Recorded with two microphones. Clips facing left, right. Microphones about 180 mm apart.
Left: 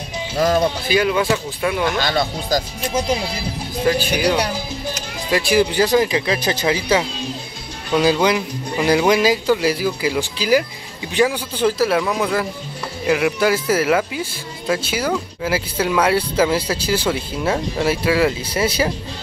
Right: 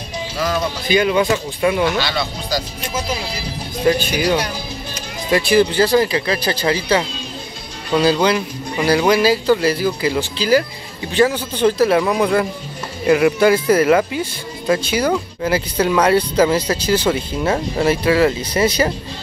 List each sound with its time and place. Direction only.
0.4 s speech: 45° left (ahead or behind)
0.8 s speech: centre (ahead or behind)
1.9 s speech: 45° left (ahead or behind)
3.8 s speech: centre (ahead or behind)
5.5 s speech: 10° left (ahead or behind)